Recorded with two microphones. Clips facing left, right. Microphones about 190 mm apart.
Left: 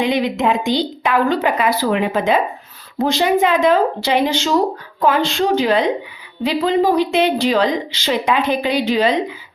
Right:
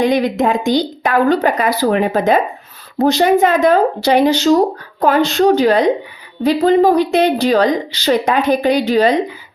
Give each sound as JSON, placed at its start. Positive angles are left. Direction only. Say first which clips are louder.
{"t": 0.0, "sound": "a woman's voice", "louder": "right 3 dB", "side_deg": -45}